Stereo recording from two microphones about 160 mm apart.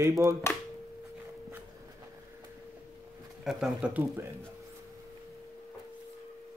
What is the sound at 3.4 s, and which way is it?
Speech, 5° right (ahead or behind).